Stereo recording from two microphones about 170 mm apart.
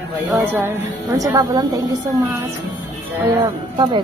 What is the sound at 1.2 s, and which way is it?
Speech, 20° right (ahead or behind).